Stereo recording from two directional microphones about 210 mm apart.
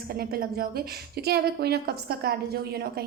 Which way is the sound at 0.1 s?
45° right (ahead or behind).